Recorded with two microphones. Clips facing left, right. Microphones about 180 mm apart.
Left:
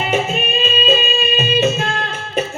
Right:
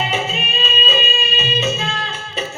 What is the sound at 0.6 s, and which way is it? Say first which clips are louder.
Music: left 4 dB; 50° left (ahead or behind).